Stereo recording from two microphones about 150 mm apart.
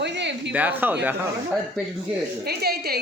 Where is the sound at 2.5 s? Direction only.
90° right.